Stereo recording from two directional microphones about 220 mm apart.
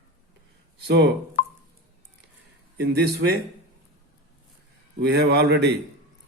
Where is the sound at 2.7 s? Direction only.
50° right (ahead or behind).